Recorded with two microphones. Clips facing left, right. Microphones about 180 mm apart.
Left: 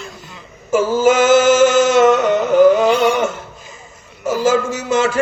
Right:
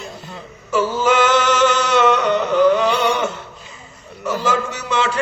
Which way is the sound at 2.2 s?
45° left (ahead or behind).